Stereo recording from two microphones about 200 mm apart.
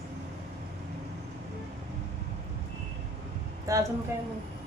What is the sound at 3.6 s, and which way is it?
Speech, 15° right (ahead or behind).